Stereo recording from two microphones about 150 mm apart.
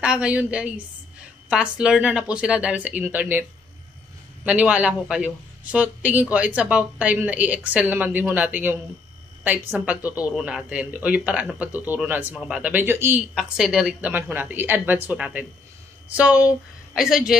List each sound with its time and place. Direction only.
0.0 s a woman's voice: 5° right (ahead or behind)
4.5 s a woman's voice: 10° right (ahead or behind)
13.3 s a woman's voice: 5° right (ahead or behind)